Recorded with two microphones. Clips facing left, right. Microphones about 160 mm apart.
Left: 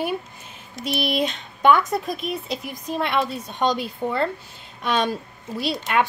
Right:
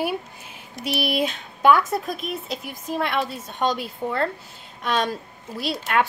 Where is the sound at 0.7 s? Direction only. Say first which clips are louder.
Even; 60° right (ahead or behind).